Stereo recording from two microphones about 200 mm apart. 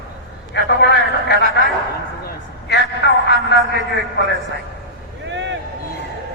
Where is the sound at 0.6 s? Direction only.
60° left (ahead or behind).